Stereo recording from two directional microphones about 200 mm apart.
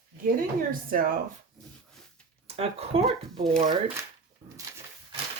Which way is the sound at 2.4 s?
30° right (ahead or behind).